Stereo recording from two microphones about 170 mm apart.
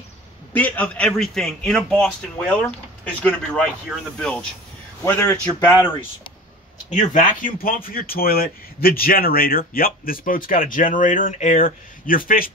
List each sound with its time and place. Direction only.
0.5 s a man's voice: 10° left (ahead or behind)
5.0 s a man's voice: 15° left (ahead or behind)
6.9 s speech: 45° left (ahead or behind)